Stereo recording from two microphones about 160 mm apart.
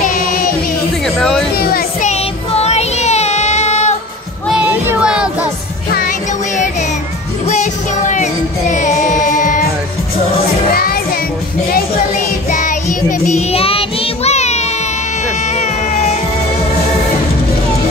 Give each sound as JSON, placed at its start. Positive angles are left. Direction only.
{"t": 0.0, "sound": "music", "side_deg": 60}
{"t": 1.0, "sound": "music", "side_deg": 5}
{"t": 1.6, "sound": "music", "side_deg": 70}
{"t": 2.0, "sound": "child singing", "side_deg": 40}
{"t": 4.5, "sound": "a sound", "side_deg": -5}
{"t": 5.9, "sound": "music", "side_deg": 55}
{"t": 10.7, "sound": "music", "side_deg": 70}
{"t": 12.4, "sound": "child singing", "side_deg": 55}
{"t": 15.2, "sound": "music", "side_deg": 45}